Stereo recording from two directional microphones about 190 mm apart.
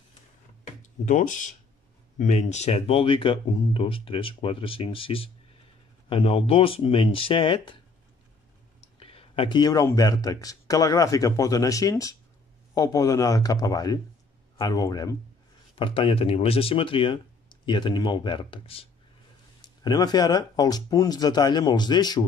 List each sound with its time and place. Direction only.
1.0 s speech: 40° left (ahead or behind)
9.0 s a man's voice: 30° left (ahead or behind)